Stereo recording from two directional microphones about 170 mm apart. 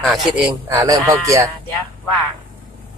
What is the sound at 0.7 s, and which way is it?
Speech, 20° right (ahead or behind).